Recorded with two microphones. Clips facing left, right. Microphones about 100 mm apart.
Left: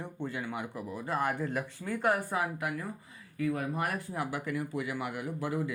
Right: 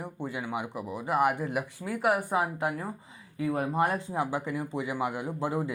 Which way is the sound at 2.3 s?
25° right (ahead or behind).